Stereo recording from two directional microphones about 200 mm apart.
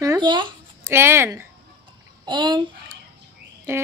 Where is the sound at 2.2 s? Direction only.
20° right (ahead or behind).